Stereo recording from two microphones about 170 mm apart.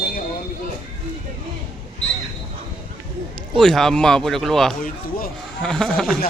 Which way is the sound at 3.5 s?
Centre (ahead or behind).